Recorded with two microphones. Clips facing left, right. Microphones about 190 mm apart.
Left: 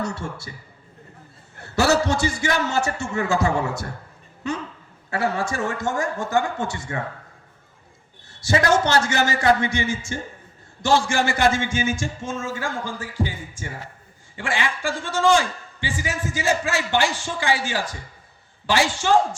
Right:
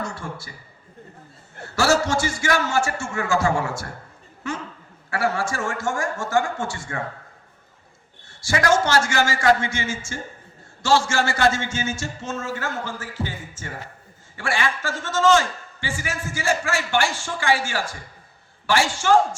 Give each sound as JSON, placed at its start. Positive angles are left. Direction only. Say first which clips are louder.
{"t": 0.0, "sound": "a woman's voice", "louder": "left 3 dB", "side_deg": 70}
{"t": 1.7, "sound": "a man's voice", "louder": "left 1 dB", "side_deg": 20}
{"t": 5.1, "sound": "a man's voice", "louder": "even", "side_deg": 20}
{"t": 8.4, "sound": "a man's voice", "louder": "left 1 dB", "side_deg": 20}